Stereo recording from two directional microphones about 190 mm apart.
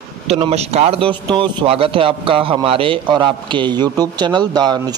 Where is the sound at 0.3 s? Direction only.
35° right (ahead or behind).